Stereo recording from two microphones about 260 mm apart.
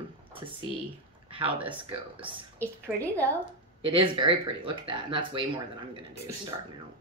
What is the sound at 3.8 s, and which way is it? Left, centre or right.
Speech, centre.